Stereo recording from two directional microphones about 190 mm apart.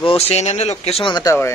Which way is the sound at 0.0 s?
30° left (ahead or behind).